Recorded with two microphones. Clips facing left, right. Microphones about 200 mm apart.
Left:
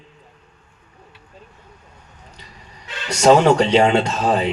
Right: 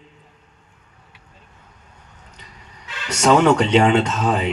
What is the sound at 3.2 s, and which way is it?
Mantra, 35° left (ahead or behind).